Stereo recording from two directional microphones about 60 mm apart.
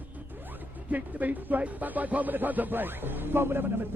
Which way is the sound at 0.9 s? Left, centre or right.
Right.